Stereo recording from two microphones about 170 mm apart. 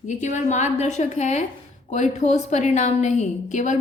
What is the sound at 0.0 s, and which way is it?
A woman's voice, 45° left (ahead or behind).